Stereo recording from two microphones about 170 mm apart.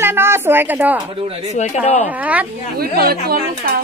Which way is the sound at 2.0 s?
10° right (ahead or behind).